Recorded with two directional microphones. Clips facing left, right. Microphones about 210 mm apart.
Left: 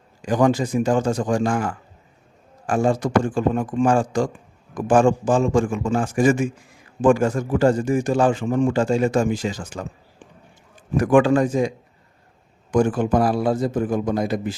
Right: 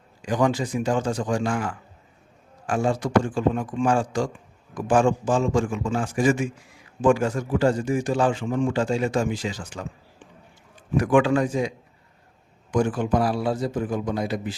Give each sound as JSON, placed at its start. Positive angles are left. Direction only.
{"t": 0.2, "sound": "a man's voice", "side_deg": 45}
{"t": 10.9, "sound": "a man's voice", "side_deg": 45}
{"t": 12.7, "sound": "a man's voice", "side_deg": 45}